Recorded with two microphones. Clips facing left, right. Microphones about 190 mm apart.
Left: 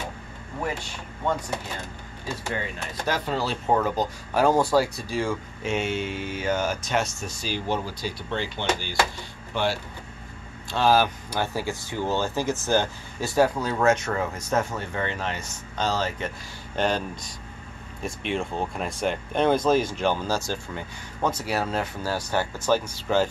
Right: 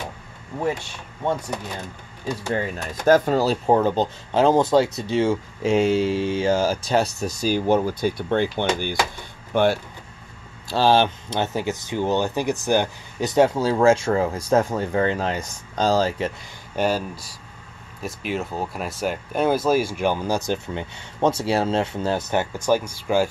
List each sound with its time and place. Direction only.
3.1 s speech: 45° right (ahead or behind)
10.7 s speech: 30° right (ahead or behind)
16.7 s speech: 10° right (ahead or behind)